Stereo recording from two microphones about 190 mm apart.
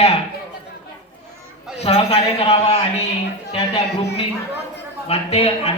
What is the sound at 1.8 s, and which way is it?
A man's voice, 30° left (ahead or behind).